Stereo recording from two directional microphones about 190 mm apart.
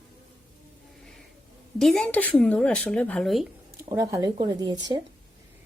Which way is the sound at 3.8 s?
15° right (ahead or behind).